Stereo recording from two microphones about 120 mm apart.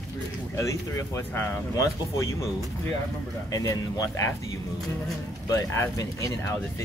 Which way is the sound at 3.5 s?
30° left (ahead or behind).